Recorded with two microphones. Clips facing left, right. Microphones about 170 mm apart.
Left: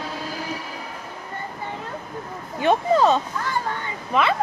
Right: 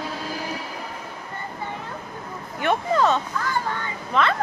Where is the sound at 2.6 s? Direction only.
15° left (ahead or behind).